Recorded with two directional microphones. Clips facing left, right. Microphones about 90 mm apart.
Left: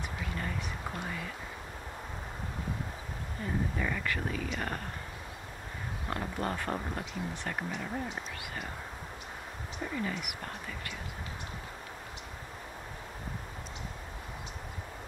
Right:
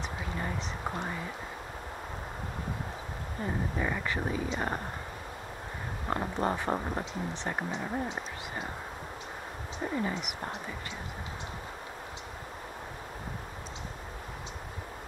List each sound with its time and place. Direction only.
0.4 s a sound: 25° right (ahead or behind)
3.4 s speech: 20° right (ahead or behind)
6.0 s speech: 25° right (ahead or behind)
9.8 s speech: 25° right (ahead or behind)